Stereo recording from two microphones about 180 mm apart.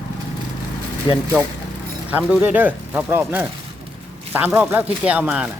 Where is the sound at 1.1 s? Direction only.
25° left (ahead or behind).